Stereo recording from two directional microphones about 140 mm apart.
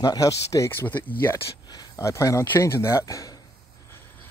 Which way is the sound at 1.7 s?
25° left (ahead or behind).